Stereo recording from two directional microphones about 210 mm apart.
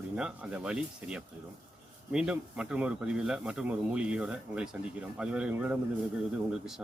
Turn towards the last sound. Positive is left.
turn(degrees=-5)  # may be behind; listen again after turning